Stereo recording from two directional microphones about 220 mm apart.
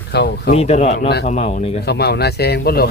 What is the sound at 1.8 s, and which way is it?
Speech, 45° left (ahead or behind).